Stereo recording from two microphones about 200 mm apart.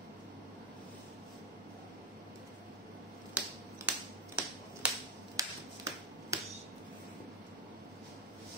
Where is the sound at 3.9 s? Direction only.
5° right (ahead or behind).